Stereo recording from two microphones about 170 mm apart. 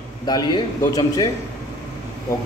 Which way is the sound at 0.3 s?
25° left (ahead or behind).